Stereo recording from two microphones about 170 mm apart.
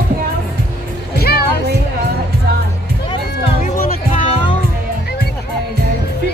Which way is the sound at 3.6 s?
45° left (ahead or behind).